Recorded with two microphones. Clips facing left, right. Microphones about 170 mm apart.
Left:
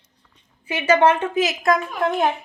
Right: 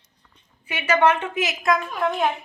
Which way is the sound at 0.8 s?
30° left (ahead or behind).